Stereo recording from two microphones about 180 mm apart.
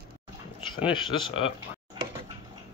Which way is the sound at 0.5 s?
25° left (ahead or behind).